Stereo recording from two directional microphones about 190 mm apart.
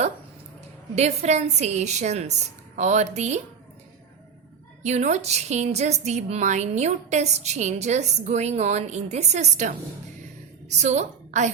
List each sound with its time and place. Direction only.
0.9 s a woman's voice: 35° right (ahead or behind)
4.8 s a woman's voice: 35° right (ahead or behind)